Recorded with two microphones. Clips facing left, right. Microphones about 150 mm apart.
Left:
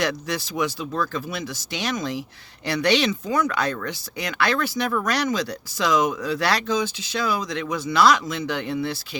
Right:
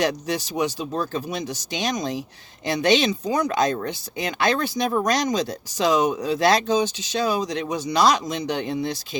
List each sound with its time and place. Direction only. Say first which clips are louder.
0.0 s speech: right 2 dB; 20° right (ahead or behind)
3.2 s speech: even; 35° right (ahead or behind)
3.7 s speech: right 2 dB; 20° right (ahead or behind)
4.9 s speech: right 3 dB; 30° right (ahead or behind)
5.2 s speech: right 1 dB; 20° right (ahead or behind)